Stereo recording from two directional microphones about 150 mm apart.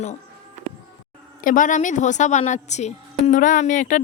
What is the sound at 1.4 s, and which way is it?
A woman's voice, 60° left (ahead or behind).